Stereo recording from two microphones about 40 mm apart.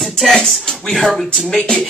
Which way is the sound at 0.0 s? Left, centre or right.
Centre.